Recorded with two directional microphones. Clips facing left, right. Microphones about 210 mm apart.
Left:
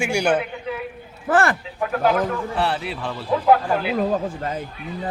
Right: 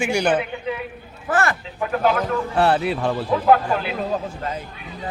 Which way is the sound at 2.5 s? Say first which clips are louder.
Right 5 dB; 45° right (ahead or behind).